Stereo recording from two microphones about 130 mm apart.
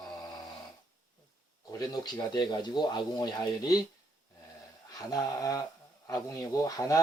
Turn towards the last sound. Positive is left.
turn(degrees=25)  # may be behind; listen again after turning